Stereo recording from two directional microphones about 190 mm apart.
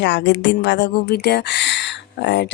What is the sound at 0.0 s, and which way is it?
Speech, 70° left (ahead or behind).